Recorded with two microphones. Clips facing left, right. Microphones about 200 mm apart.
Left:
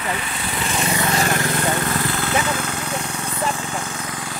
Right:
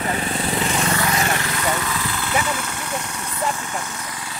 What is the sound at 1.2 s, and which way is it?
Vehicle, 50° left (ahead or behind).